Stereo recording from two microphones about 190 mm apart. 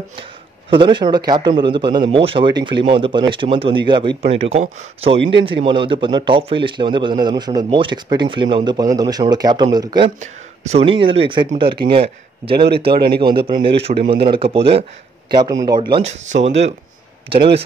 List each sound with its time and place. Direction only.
0.7 s a man's voice: 25° right (ahead or behind)
10.2 s a man's voice: 35° right (ahead or behind)
12.5 s speech: 60° right (ahead or behind)
13.5 s a man's voice: 25° right (ahead or behind)
14.0 s speech: 55° right (ahead or behind)
14.3 s a man's voice: 30° right (ahead or behind)
15.3 s a man's voice: 20° right (ahead or behind)
16.0 s speech: 35° right (ahead or behind)